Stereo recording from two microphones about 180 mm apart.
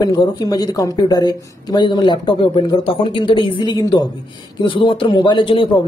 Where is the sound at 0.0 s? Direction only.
20° left (ahead or behind).